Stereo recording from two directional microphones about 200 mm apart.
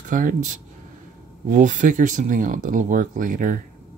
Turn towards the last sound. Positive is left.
turn(degrees=-40)  # may be behind; listen again after turning